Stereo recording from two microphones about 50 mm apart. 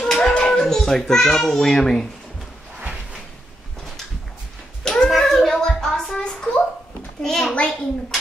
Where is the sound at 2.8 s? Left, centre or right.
Right.